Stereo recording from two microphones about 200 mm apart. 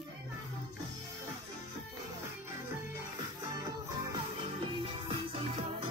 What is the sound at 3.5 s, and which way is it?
Music, 20° right (ahead or behind).